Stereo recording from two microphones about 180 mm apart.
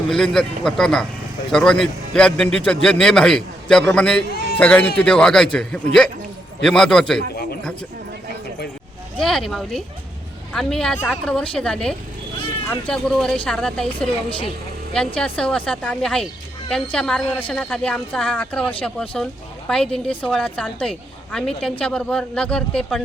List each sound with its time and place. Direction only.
0.1 s speech: centre (ahead or behind)
9.2 s speech: centre (ahead or behind)
14.3 s a woman's voice: 30° left (ahead or behind)
14.9 s speech: 5° left (ahead or behind)